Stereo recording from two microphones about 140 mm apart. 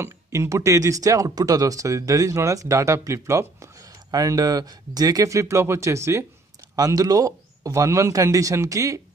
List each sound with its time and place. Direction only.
0.0 s speech: 20° right (ahead or behind)